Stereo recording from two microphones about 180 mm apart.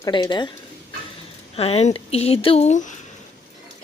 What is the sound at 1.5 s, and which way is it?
A woman's voice, 35° left (ahead or behind).